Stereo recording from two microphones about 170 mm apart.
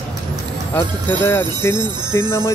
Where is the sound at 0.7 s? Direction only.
10° left (ahead or behind).